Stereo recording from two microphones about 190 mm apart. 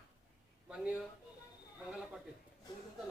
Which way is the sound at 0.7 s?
5° right (ahead or behind).